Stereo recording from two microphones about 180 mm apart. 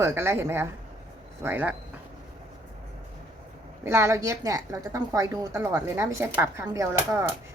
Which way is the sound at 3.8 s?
15° right (ahead or behind).